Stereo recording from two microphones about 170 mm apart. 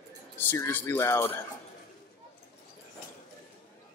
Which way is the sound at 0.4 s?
10° left (ahead or behind).